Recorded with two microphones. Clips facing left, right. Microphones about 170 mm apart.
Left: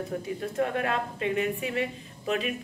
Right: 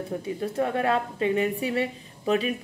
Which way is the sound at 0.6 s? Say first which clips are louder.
Right 3 dB; 30° right (ahead or behind).